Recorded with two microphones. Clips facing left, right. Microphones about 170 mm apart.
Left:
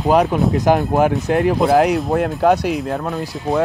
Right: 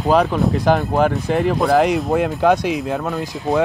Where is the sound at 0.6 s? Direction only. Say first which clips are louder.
Left 2 dB; 15° left (ahead or behind).